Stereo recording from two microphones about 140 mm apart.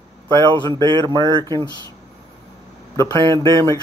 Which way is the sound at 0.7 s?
30° right (ahead or behind).